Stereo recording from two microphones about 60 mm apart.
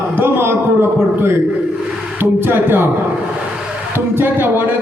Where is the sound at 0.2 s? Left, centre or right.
Right.